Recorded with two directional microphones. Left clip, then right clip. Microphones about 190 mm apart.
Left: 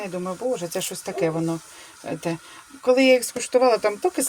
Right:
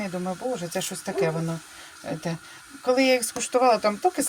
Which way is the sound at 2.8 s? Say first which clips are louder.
Left 4 dB; 25° left (ahead or behind).